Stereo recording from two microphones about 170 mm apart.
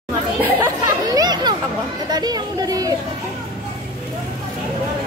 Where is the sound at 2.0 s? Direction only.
25° right (ahead or behind).